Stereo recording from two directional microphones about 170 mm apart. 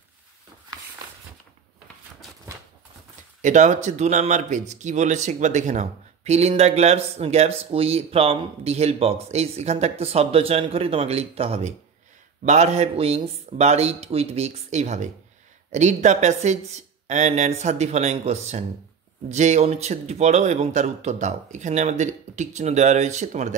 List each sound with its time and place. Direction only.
3.4 s speech: 45° right (ahead or behind)